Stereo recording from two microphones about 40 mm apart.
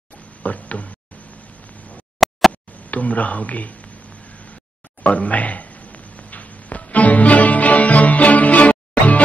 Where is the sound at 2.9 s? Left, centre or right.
Left.